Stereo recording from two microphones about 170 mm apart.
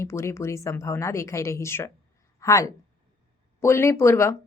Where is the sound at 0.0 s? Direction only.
15° left (ahead or behind).